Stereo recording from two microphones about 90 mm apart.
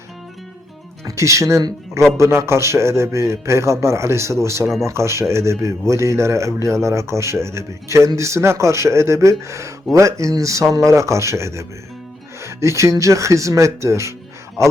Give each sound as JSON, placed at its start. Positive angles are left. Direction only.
{"t": 1.0, "sound": "speech", "side_deg": -35}